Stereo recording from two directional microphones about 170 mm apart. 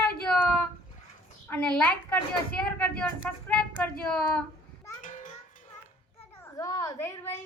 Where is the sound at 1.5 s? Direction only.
10° left (ahead or behind).